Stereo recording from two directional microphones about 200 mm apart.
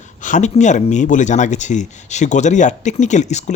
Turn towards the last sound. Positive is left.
turn(degrees=35)  # may be behind; listen again after turning